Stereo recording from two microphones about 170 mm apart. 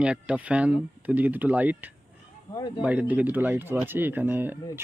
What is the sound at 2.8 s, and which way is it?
Speech, 10° right (ahead or behind).